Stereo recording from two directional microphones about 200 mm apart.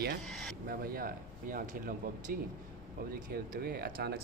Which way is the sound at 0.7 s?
45° right (ahead or behind).